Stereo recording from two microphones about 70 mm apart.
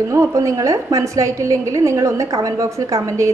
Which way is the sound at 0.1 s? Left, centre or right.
Right.